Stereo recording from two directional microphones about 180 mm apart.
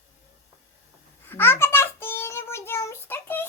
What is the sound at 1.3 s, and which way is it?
Child singing, 10° left (ahead or behind).